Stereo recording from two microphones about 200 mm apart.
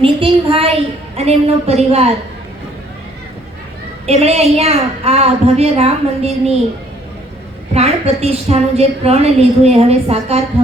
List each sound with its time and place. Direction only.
0.0 s a woman's voice: 25° right (ahead or behind)
4.0 s a woman's voice: 30° right (ahead or behind)
7.7 s a woman's voice: 30° right (ahead or behind)